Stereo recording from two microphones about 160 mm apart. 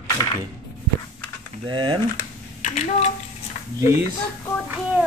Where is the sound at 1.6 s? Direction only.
30° right (ahead or behind).